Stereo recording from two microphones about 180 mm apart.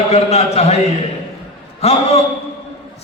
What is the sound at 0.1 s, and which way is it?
Speech, 35° left (ahead or behind).